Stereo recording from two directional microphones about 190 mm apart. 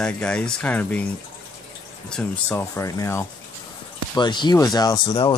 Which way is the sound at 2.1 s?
10° left (ahead or behind).